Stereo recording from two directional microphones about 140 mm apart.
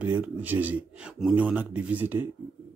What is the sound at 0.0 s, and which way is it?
Speech, 10° right (ahead or behind).